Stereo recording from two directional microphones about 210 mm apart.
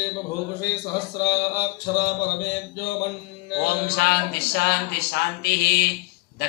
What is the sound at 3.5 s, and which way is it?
A man's voice, 50° left (ahead or behind).